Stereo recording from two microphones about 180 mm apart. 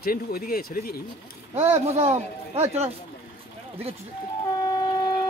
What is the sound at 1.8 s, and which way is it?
Speech, 35° right (ahead or behind).